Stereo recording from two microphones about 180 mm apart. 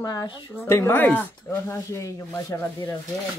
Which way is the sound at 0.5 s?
15° left (ahead or behind).